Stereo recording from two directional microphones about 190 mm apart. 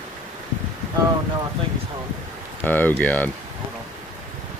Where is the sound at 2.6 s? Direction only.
10° left (ahead or behind).